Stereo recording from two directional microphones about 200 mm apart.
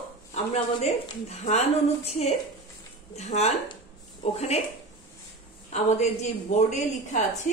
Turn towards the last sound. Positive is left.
turn(degrees=35)  # may be behind; listen again after turning